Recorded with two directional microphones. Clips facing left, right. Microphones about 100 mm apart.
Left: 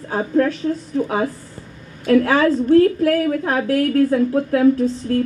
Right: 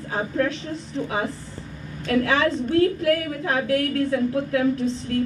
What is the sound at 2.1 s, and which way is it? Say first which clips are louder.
A woman's voice: left 6 dB; 35° left (ahead or behind).